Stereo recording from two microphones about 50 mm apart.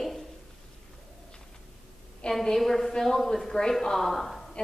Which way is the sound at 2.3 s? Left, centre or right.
Centre.